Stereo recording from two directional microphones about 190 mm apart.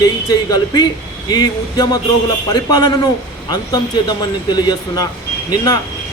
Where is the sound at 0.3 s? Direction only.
20° left (ahead or behind).